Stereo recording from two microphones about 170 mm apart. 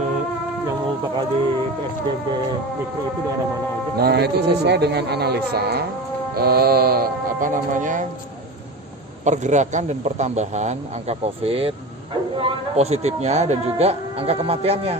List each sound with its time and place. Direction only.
4.0 s speech: 75° right (ahead or behind); by 8.1 s 50° right (ahead or behind)
9.2 s a man's voice: 45° right (ahead or behind)